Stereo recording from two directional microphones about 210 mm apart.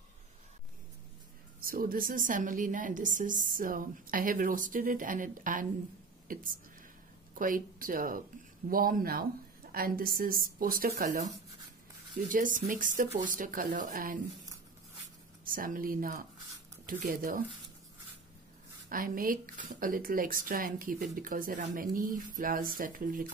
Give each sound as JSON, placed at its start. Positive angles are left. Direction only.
{"t": 1.6, "sound": "a woman's voice", "side_deg": -45}
{"t": 12.3, "sound": "a woman's voice", "side_deg": -40}
{"t": 15.4, "sound": "a woman's voice", "side_deg": -40}
{"t": 18.9, "sound": "a woman's voice", "side_deg": -40}